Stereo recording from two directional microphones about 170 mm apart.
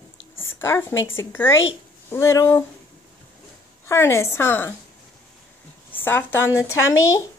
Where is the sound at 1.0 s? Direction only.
15° left (ahead or behind).